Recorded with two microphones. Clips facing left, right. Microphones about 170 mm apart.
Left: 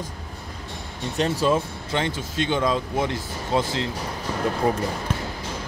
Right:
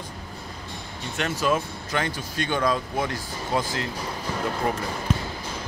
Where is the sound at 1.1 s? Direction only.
30° left (ahead or behind).